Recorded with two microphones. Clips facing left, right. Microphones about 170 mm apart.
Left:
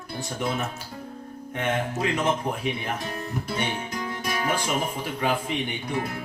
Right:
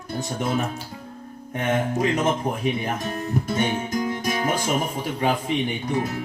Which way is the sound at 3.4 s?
45° right (ahead or behind).